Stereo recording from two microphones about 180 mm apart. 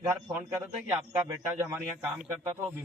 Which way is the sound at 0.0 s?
15° right (ahead or behind).